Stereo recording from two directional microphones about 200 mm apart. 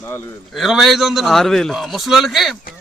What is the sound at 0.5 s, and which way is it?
A man's voice, centre (ahead or behind).